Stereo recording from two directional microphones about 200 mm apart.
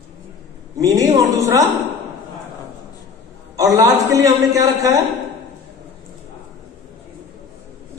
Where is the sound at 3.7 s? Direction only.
15° right (ahead or behind).